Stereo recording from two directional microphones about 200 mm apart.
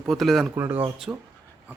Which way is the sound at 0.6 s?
10° right (ahead or behind).